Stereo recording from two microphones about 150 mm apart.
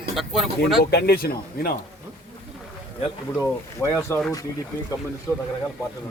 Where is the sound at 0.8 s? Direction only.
90° left.